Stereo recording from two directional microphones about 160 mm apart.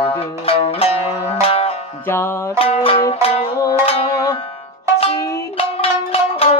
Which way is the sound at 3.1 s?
40° left (ahead or behind).